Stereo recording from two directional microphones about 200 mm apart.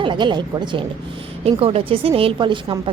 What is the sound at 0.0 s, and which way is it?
A woman's voice, 25° right (ahead or behind).